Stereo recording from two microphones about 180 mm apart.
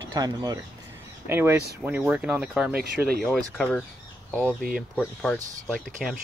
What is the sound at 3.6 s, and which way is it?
Speech, 5° left (ahead or behind).